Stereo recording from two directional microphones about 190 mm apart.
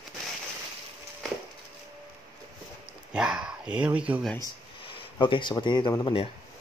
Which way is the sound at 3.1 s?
5° right (ahead or behind).